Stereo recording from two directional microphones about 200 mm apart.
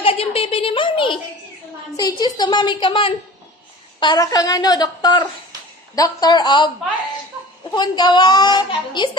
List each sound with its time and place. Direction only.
0.0 s a woman's voice: 25° left (ahead or behind)
7.7 s a woman's voice: 20° left (ahead or behind)